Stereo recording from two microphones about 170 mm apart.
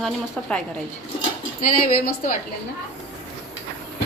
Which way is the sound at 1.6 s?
55° left (ahead or behind).